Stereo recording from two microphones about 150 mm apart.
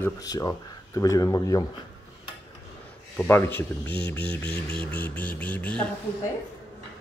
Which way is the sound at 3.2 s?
15° left (ahead or behind).